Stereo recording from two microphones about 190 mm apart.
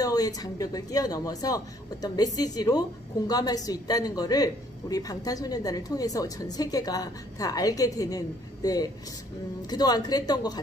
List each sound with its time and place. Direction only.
0.0 s a man's voice: 20° left (ahead or behind)